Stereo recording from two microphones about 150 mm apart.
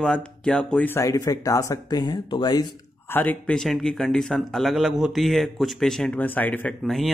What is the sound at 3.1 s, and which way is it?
Speech, 10° left (ahead or behind).